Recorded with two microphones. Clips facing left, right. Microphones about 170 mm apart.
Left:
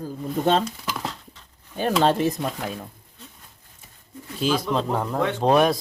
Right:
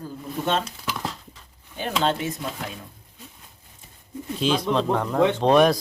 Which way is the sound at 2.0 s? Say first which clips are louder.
Left 3 dB; 40° left (ahead or behind).